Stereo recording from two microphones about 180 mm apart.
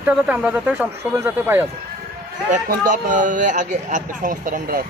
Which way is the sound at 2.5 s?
45° right (ahead or behind).